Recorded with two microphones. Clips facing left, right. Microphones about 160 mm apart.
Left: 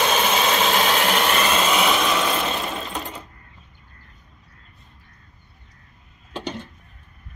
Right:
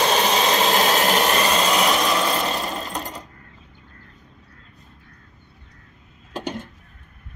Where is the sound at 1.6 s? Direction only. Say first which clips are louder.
Even; centre (ahead or behind).